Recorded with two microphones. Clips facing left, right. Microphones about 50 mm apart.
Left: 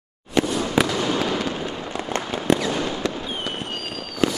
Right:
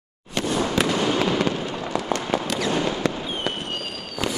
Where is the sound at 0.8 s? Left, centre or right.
Centre.